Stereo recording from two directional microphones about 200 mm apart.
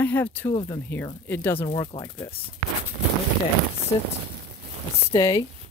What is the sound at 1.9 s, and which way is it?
Speech, 15° left (ahead or behind).